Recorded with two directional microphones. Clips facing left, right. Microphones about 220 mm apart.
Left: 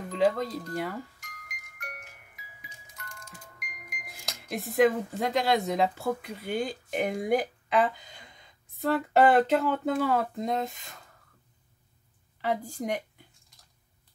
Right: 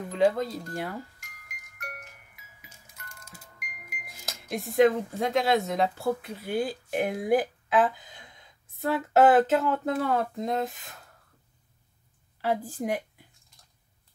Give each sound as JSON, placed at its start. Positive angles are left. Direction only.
{"t": 0.1, "sound": "speech", "side_deg": 0}
{"t": 1.6, "sound": "music", "side_deg": -5}
{"t": 3.0, "sound": "speech", "side_deg": -5}
{"t": 12.4, "sound": "a woman's voice", "side_deg": -5}